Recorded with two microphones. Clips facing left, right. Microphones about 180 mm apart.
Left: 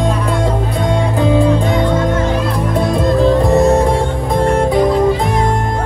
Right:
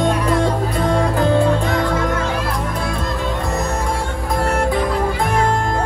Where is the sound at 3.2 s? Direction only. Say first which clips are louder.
Left 14 dB; 30° left (ahead or behind).